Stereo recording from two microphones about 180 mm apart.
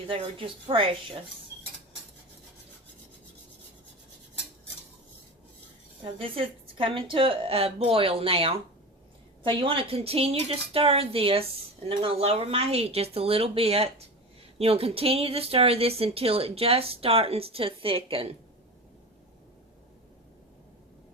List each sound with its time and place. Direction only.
0.1 s speech: 30° right (ahead or behind)
6.0 s speech: 30° right (ahead or behind)